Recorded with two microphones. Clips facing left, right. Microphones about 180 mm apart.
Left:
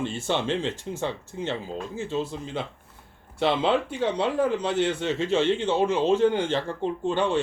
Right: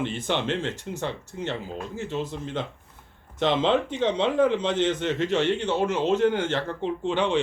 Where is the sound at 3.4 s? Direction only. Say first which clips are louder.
Right 1 dB; 10° left (ahead or behind).